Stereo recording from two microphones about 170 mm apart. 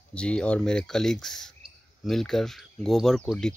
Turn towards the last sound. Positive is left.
turn(degrees=5)  # may be behind; listen again after turning